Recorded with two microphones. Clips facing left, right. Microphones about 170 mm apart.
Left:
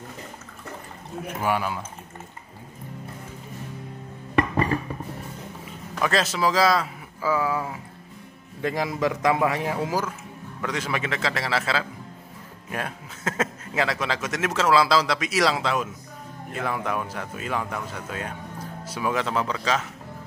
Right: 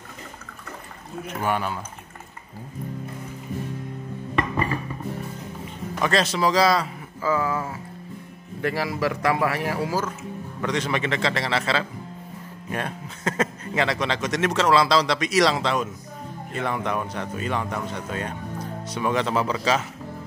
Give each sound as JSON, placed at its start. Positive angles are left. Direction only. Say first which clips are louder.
{"t": 1.2, "sound": "a man's voice", "louder": "even", "side_deg": 10}
{"t": 5.9, "sound": "a man's voice", "louder": "right 1 dB", "side_deg": 0}
{"t": 10.6, "sound": "a man's voice", "louder": "right 3 dB", "side_deg": 5}